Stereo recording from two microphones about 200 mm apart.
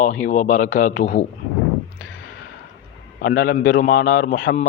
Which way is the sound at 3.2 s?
45° left (ahead or behind).